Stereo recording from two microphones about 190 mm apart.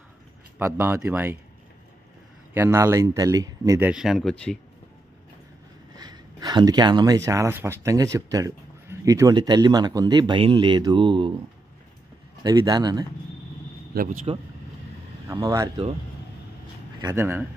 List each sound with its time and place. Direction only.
0.6 s speech: 15° right (ahead or behind)
2.5 s speech: 10° right (ahead or behind)
3.9 s speech: centre (ahead or behind)
5.9 s speech: 20° right (ahead or behind)
12.4 s speech: 20° right (ahead or behind)
13.9 s speech: 50° right (ahead or behind)
15.2 s speech: 15° right (ahead or behind)
17.0 s speech: 15° right (ahead or behind)